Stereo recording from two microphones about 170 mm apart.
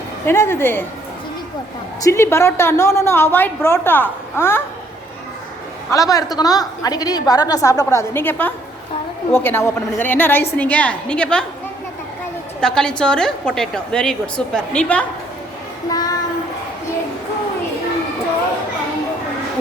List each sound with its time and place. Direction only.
0.3 s a woman's voice: 15° left (ahead or behind)
2.0 s a woman's voice: 15° left (ahead or behind)
5.9 s a woman's voice: 20° left (ahead or behind)
12.5 s a woman's voice: 5° left (ahead or behind)
15.9 s child singing: 20° left (ahead or behind)